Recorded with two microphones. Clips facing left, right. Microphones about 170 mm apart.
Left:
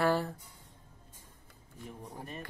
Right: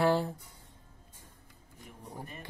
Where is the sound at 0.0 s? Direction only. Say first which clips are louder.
Right 2 dB; 20° right (ahead or behind).